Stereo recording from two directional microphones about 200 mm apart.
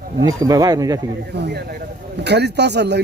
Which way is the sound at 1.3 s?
55° right (ahead or behind).